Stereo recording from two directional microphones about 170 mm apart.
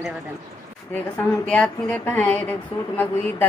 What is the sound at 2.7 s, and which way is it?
Speech, 35° left (ahead or behind).